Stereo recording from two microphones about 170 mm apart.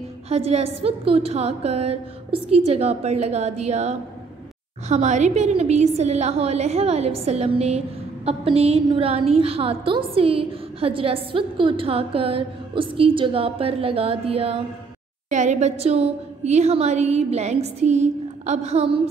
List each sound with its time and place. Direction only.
0.3 s a woman's voice: 35° right (ahead or behind)